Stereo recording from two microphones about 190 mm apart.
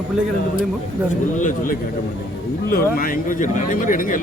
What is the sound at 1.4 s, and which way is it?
A man's voice, 45° left (ahead or behind).